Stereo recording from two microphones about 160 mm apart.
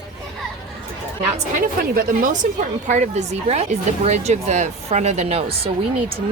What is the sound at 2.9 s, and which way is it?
Speech, 45° right (ahead or behind).